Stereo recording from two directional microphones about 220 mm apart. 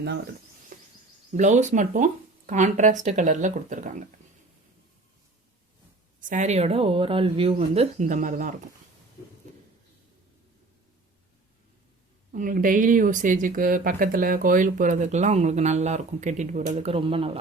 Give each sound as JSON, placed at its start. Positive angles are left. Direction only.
{"t": 0.7, "sound": "a sound", "side_deg": -35}
{"t": 1.3, "sound": "speech", "side_deg": -35}
{"t": 6.1, "sound": "speech", "side_deg": -35}
{"t": 12.3, "sound": "speech", "side_deg": -35}